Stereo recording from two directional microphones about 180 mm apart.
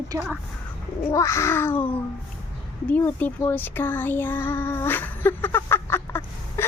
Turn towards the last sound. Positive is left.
turn(degrees=15)  # may be behind; listen again after turning